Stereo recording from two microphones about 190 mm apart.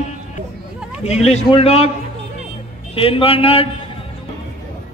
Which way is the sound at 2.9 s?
30° left (ahead or behind).